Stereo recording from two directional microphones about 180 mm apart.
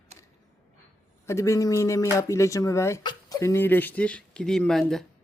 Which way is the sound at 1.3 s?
15° left (ahead or behind).